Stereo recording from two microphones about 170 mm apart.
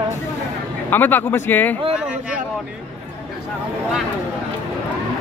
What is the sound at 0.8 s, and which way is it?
Speech, 10° left (ahead or behind).